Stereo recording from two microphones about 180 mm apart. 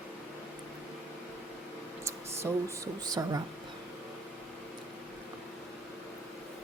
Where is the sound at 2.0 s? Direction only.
15° right (ahead or behind).